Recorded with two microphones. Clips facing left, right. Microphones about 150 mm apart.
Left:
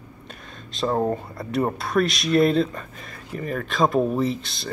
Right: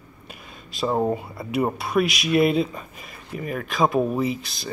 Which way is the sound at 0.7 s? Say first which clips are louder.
Even; 5° right (ahead or behind).